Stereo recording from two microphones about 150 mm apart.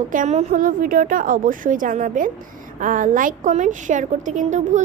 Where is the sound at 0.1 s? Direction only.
55° right (ahead or behind).